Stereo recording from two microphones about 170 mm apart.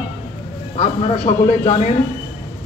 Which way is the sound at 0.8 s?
35° left (ahead or behind).